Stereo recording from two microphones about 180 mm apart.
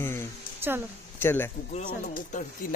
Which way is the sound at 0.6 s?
10° right (ahead or behind).